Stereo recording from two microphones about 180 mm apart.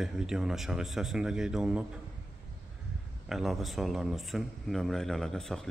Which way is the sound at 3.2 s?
Centre (ahead or behind).